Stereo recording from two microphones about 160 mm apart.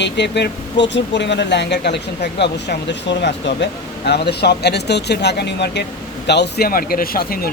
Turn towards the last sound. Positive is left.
turn(degrees=65)  # may be behind; listen again after turning